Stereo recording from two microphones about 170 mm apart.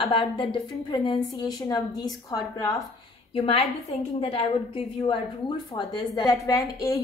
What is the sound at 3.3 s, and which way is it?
A woman's voice, 30° left (ahead or behind).